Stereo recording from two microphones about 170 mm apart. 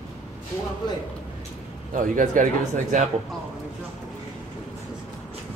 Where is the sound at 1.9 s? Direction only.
50° right (ahead or behind).